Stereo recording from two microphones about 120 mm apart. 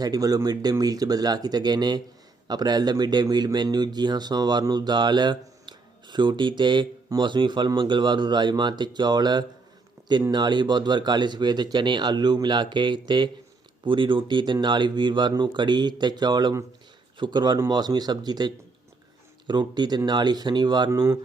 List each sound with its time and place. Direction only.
0.0 s speech: 30° right (ahead or behind)